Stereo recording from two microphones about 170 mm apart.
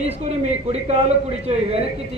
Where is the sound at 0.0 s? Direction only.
40° right (ahead or behind).